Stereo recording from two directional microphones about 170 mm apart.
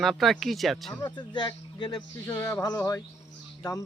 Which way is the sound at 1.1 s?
25° left (ahead or behind).